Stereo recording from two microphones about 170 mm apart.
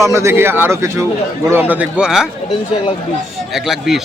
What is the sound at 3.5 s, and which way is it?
Speech, centre (ahead or behind).